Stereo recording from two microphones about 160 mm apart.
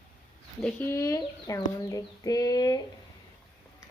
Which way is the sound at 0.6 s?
15° left (ahead or behind).